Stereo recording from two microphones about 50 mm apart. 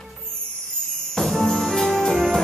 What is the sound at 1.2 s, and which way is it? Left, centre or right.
Music, centre.